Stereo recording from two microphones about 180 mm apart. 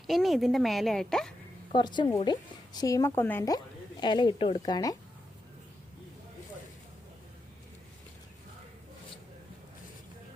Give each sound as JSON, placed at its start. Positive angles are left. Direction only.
{"t": 0.1, "sound": "a woman's voice", "side_deg": 0}
{"t": 1.7, "sound": "speech", "side_deg": 25}